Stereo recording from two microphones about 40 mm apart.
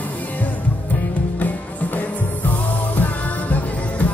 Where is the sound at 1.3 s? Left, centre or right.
Left.